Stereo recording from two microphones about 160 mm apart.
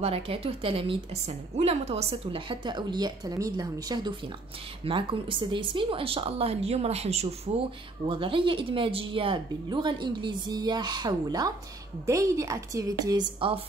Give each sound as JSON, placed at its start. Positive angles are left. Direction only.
{"t": 0.0, "sound": "a woman's voice", "side_deg": -35}